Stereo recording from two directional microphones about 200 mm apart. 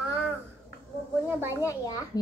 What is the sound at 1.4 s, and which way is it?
Speech, 10° right (ahead or behind).